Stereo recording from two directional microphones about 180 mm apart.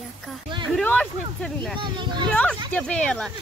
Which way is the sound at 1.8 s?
25° right (ahead or behind).